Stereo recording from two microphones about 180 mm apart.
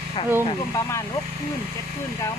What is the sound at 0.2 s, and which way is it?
Speech, 30° left (ahead or behind).